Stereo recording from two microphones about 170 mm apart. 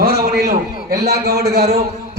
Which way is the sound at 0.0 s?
65° right (ahead or behind).